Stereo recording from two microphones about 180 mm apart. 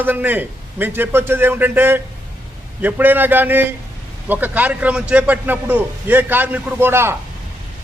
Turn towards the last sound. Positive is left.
turn(degrees=-15)  # may be behind; listen again after turning